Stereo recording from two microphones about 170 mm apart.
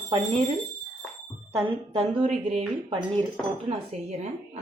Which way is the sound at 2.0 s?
40° right (ahead or behind).